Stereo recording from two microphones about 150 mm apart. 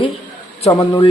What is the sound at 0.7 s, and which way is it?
Speech, 20° left (ahead or behind).